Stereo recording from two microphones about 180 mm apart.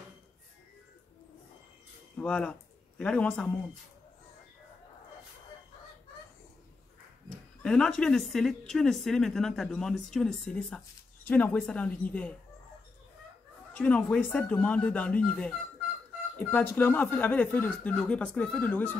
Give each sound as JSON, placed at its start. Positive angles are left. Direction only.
{"t": 2.1, "sound": "speech", "side_deg": 5}
{"t": 7.2, "sound": "speech", "side_deg": 5}
{"t": 13.7, "sound": "speech", "side_deg": 5}